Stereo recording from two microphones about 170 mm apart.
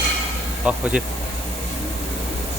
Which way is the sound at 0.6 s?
5° right (ahead or behind).